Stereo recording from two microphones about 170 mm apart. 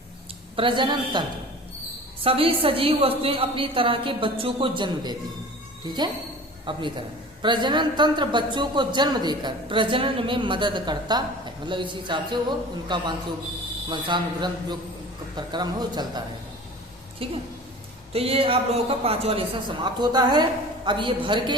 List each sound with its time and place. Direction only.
0.5 s a man's voice: 30° right (ahead or behind)
2.2 s a woman's voice: 35° right (ahead or behind)
6.7 s a man's voice: 30° right (ahead or behind)
18.1 s a woman's voice: 35° right (ahead or behind)